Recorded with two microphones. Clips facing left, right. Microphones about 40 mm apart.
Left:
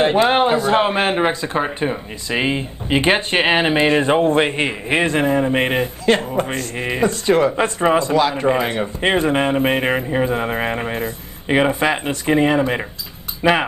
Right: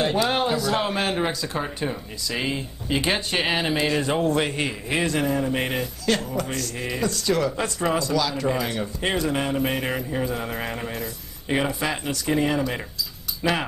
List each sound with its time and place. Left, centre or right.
0.0 s a man's voice: left